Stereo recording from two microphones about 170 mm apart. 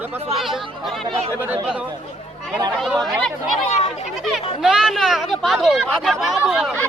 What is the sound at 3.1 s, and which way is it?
Speech, 5° left (ahead or behind).